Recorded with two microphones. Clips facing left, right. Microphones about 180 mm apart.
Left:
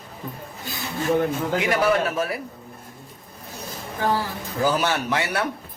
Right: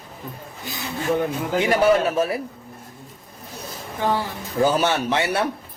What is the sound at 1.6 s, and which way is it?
Speech, 25° right (ahead or behind).